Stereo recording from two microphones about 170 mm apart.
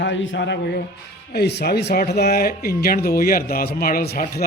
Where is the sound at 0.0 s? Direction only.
90° left.